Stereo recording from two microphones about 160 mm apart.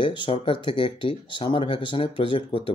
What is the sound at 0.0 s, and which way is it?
Speech, 30° left (ahead or behind).